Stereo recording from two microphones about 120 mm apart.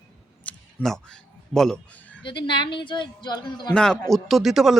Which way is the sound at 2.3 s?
40° left (ahead or behind).